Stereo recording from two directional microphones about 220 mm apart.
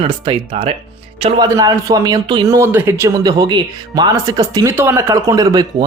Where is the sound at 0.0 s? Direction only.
25° right (ahead or behind).